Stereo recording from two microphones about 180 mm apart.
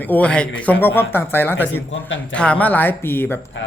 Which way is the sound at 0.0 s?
10° left (ahead or behind).